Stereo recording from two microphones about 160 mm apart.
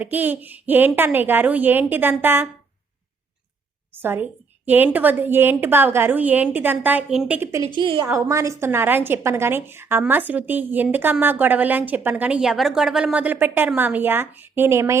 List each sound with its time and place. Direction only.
0.0 s a woman's voice: 10° right (ahead or behind)
4.0 s a woman's voice: 10° right (ahead or behind)
7.8 s a woman's voice: 30° right (ahead or behind)
8.3 s a woman's voice: 20° right (ahead or behind)